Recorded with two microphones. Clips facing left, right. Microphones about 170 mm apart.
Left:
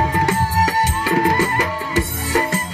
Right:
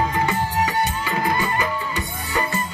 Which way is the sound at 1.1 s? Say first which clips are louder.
Left 5 dB; 70° left (ahead or behind).